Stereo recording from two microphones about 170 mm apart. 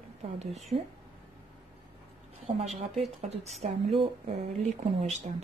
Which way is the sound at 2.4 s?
40° right (ahead or behind).